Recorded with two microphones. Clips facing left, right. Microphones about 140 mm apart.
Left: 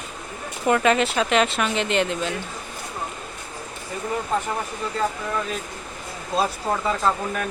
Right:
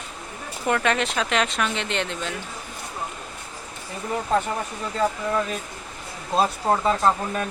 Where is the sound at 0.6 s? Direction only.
5° left (ahead or behind).